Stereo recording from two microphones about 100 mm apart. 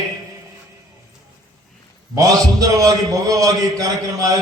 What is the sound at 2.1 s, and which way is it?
A man's voice, 35° right (ahead or behind).